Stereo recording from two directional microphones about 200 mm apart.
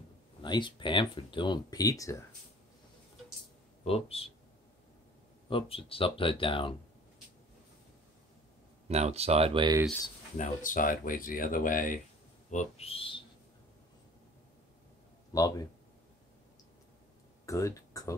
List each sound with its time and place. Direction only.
0.4 s speech: 25° left (ahead or behind)
3.8 s speech: 30° left (ahead or behind)
5.5 s speech: 25° left (ahead or behind)
8.8 s speech: 30° right (ahead or behind)
10.3 s speech: 40° left (ahead or behind)
15.3 s speech: 20° left (ahead or behind)
17.5 s a sound: 15° left (ahead or behind)